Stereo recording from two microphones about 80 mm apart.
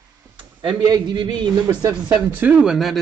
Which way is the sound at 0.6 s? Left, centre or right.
Right.